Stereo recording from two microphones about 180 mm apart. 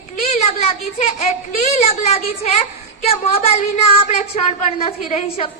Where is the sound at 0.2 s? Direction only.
35° left (ahead or behind).